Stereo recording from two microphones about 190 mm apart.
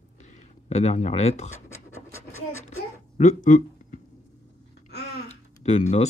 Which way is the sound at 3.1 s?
40° left (ahead or behind).